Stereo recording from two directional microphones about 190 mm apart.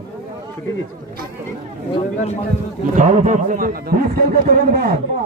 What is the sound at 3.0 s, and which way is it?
A man's voice, 40° right (ahead or behind).